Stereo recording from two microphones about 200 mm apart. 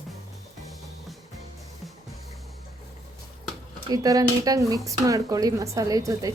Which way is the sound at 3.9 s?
20° right (ahead or behind).